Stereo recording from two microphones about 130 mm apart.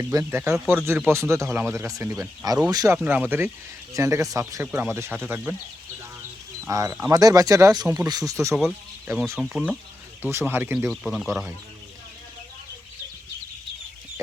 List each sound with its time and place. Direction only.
0.0 s speech: 25° right (ahead or behind)
3.0 s speech: 15° right (ahead or behind)
6.7 s speech: 25° right (ahead or behind)
8.5 s speech: 5° right (ahead or behind)
10.8 s speech: centre (ahead or behind)